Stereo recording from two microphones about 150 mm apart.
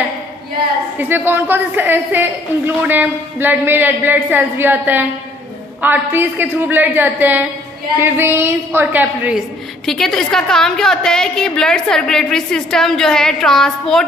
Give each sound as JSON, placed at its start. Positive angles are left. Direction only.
{"t": 0.9, "sound": "a woman's voice", "side_deg": -15}
{"t": 9.8, "sound": "a woman's voice", "side_deg": 5}